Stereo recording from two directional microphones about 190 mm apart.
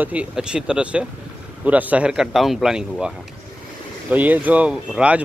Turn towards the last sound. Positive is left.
turn(degrees=-5)  # may be behind; listen again after turning